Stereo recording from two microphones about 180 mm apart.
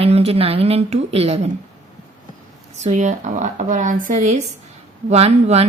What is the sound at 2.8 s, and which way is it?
Speech, 40° right (ahead or behind).